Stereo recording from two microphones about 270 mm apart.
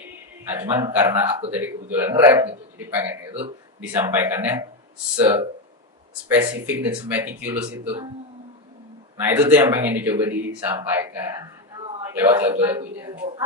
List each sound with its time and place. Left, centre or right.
0.0 s a man's voice: centre
9.1 s a man's voice: centre